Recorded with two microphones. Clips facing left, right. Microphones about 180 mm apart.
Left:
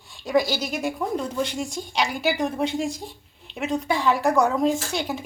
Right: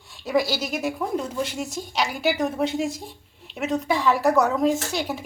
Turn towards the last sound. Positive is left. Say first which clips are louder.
# right 1 dB
turn(degrees=0)  # may be behind; listen again after turning